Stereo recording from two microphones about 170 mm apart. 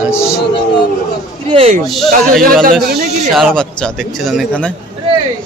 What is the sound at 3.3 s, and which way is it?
Speech, centre (ahead or behind).